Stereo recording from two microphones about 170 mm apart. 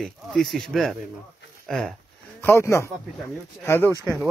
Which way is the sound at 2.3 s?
15° left (ahead or behind).